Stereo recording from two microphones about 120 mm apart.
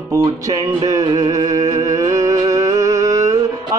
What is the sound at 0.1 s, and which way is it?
Music, 30° right (ahead or behind).